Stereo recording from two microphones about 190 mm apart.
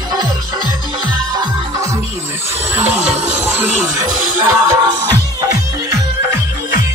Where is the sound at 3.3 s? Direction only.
10° right (ahead or behind).